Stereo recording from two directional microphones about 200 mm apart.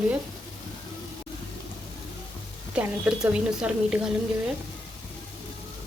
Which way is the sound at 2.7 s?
5° right (ahead or behind).